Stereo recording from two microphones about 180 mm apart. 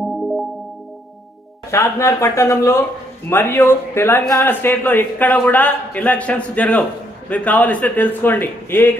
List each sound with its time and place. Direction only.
0.0 s music: centre (ahead or behind)
1.7 s a man's voice: 15° left (ahead or behind)